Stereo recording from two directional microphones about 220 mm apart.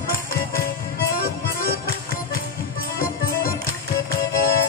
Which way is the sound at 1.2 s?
40° left (ahead or behind).